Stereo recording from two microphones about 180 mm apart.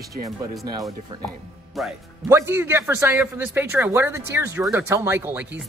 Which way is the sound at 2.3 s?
15° right (ahead or behind).